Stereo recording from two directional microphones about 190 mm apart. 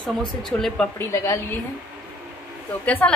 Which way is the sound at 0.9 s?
15° left (ahead or behind).